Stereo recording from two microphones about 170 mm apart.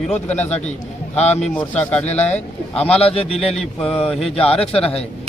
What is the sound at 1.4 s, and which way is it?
Speech, 5° left (ahead or behind).